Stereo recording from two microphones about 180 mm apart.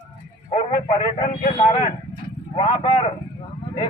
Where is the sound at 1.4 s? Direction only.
35° left (ahead or behind).